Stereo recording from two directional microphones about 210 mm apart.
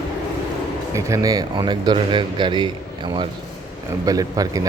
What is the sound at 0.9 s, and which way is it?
Speech, 15° right (ahead or behind).